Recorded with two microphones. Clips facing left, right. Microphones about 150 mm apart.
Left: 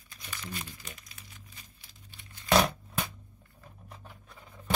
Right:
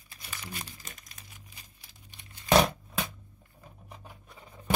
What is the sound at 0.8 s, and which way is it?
Speech, 45° right (ahead or behind).